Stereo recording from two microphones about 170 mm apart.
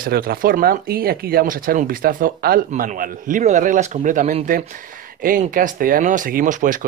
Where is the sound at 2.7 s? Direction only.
50° right (ahead or behind).